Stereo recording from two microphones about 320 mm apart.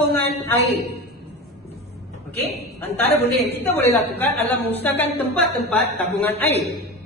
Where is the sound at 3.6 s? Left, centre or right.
Centre.